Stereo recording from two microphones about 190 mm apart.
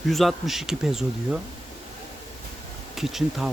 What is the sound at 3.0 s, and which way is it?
Speech, centre (ahead or behind).